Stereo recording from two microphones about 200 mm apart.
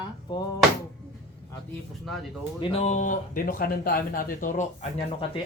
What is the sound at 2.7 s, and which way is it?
Speech, 35° left (ahead or behind).